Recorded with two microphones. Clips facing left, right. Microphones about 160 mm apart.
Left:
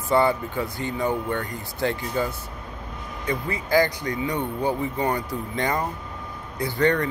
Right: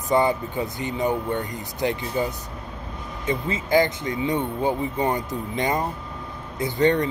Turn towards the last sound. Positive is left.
turn(degrees=-20)  # may be behind; listen again after turning